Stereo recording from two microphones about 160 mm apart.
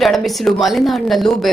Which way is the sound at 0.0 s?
Centre (ahead or behind).